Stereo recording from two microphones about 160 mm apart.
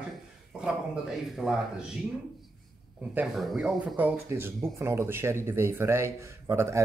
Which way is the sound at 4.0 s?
15° right (ahead or behind).